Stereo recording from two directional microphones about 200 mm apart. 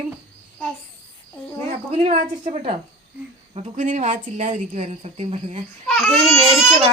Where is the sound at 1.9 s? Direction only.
35° right (ahead or behind).